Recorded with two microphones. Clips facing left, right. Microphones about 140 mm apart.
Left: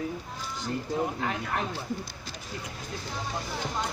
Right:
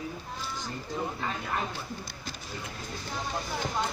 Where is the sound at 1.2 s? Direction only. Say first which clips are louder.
Left 2 dB; 65° left (ahead or behind).